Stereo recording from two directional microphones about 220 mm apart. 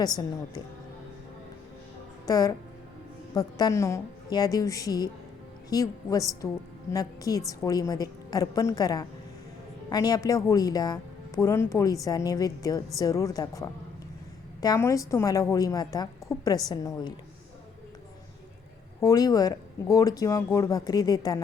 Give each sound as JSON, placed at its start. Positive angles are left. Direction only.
{"t": 0.0, "sound": "a woman's voice", "side_deg": 15}
{"t": 2.2, "sound": "a woman's voice", "side_deg": 15}
{"t": 18.9, "sound": "a woman's voice", "side_deg": 15}